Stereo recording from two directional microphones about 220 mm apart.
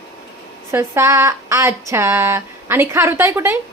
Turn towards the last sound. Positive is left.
turn(degrees=-10)  # may be behind; listen again after turning